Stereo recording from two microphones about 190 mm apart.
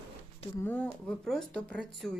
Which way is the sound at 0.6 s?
10° left (ahead or behind).